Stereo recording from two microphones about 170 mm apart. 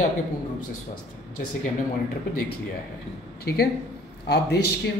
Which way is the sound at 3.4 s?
65° left (ahead or behind).